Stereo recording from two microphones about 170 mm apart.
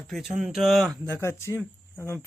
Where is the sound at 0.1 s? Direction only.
Centre (ahead or behind).